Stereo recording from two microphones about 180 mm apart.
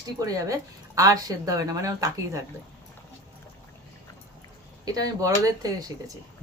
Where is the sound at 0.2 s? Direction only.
20° right (ahead or behind).